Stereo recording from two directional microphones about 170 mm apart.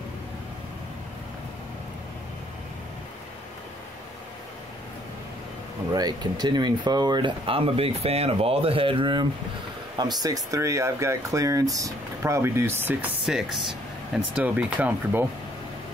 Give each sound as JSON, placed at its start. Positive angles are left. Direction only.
{"t": 5.9, "sound": "speech", "side_deg": -25}
{"t": 13.2, "sound": "speech", "side_deg": 0}